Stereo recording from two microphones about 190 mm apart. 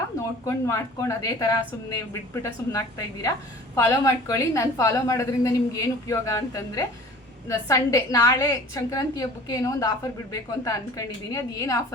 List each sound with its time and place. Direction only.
0.2 s a woman's voice: 15° left (ahead or behind)